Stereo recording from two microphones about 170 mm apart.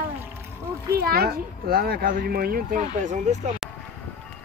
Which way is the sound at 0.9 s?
65° right (ahead or behind).